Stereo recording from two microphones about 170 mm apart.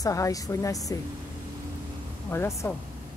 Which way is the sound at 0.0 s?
20° left (ahead or behind).